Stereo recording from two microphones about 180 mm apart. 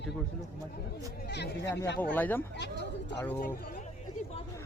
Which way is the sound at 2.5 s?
75° left (ahead or behind).